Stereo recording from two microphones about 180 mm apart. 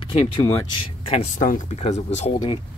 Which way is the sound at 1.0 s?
40° left (ahead or behind).